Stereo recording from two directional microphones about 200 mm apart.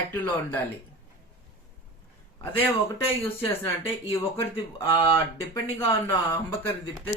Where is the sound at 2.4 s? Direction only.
10° left (ahead or behind).